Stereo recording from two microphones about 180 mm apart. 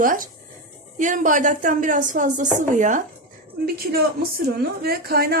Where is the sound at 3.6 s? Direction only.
55° right (ahead or behind).